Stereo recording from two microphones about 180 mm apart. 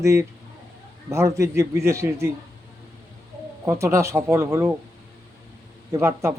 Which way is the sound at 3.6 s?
15° right (ahead or behind).